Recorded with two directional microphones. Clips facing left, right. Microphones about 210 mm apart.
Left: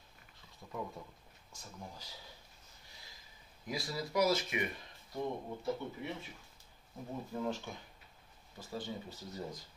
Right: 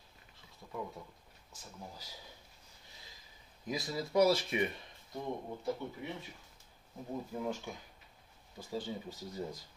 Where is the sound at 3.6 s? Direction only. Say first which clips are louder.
Right 2 dB; 20° right (ahead or behind).